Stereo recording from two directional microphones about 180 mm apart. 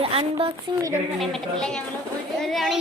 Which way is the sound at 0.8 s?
20° right (ahead or behind).